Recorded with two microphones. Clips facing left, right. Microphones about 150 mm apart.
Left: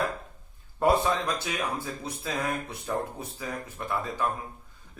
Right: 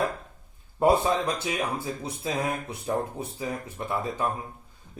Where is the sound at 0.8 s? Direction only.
20° right (ahead or behind).